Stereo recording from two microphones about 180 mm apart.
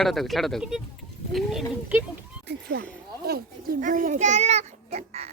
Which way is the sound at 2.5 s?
70° right (ahead or behind).